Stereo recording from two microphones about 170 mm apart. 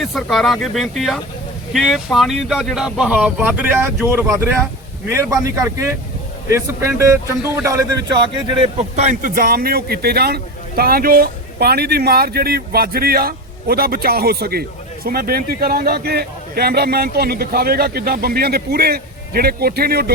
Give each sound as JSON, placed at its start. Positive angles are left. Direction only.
{"t": 0.0, "sound": "a man's voice", "side_deg": 0}
{"t": 8.4, "sound": "speech", "side_deg": -35}